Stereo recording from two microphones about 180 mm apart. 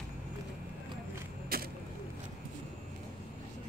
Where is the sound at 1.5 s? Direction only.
55° right (ahead or behind).